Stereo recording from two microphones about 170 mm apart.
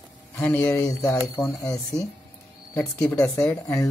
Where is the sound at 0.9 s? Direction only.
20° left (ahead or behind).